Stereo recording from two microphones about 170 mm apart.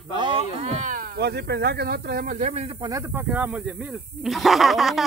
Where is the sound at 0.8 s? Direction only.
55° right (ahead or behind).